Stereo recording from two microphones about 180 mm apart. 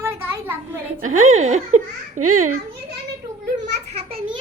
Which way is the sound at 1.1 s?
40° right (ahead or behind).